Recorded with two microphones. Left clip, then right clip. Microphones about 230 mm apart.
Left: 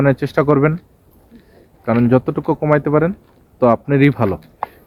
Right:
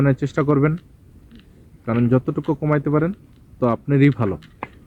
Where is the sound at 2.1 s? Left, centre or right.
Centre.